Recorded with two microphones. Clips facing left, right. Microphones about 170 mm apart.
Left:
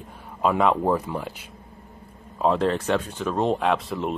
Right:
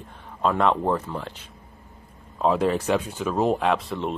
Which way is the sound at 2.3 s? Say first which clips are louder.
Even; 5° right (ahead or behind).